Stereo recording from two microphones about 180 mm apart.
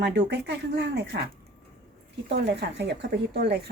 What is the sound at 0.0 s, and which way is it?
Speech, 75° right (ahead or behind).